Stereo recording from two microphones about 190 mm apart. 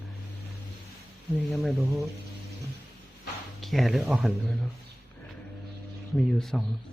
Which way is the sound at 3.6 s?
Centre (ahead or behind).